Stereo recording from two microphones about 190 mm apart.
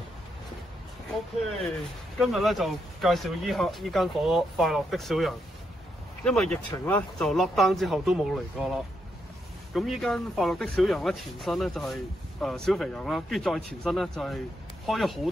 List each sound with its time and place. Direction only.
2.1 s speech: centre (ahead or behind)
6.7 s speech: 20° left (ahead or behind)
7.2 s speech: centre (ahead or behind)